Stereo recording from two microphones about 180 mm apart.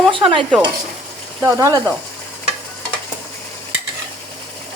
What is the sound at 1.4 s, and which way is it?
Speech, 20° right (ahead or behind).